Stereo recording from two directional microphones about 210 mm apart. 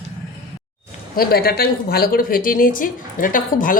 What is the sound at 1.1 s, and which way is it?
A woman's voice, 45° left (ahead or behind).